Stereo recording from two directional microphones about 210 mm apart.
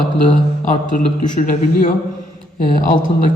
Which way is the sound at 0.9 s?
40° left (ahead or behind).